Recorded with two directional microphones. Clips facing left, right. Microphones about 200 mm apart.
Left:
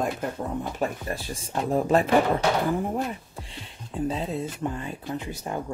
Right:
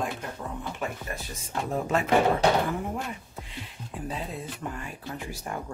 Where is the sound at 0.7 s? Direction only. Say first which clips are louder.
Left 5 dB; 30° left (ahead or behind).